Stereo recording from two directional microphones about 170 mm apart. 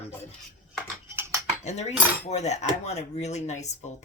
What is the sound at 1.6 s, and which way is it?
Speech, 40° left (ahead or behind).